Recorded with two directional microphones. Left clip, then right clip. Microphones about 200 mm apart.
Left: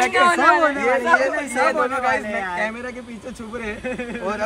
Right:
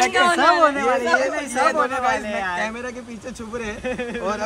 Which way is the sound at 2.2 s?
15° right (ahead or behind).